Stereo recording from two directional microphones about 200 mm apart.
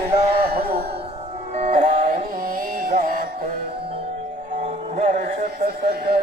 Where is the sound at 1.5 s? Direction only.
30° right (ahead or behind).